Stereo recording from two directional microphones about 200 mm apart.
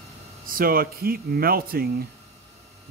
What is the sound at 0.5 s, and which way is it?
Speech, 45° right (ahead or behind).